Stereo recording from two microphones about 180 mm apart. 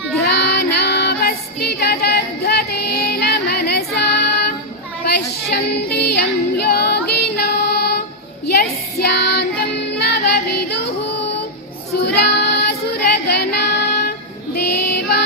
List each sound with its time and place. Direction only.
0.2 s child singing: 65° left (ahead or behind)
5.0 s yodeling: 65° left (ahead or behind)
9.0 s child singing: 65° left (ahead or behind)
10.0 s music: 65° left (ahead or behind)
11.9 s child singing: 70° left (ahead or behind)
14.5 s music: 65° left (ahead or behind)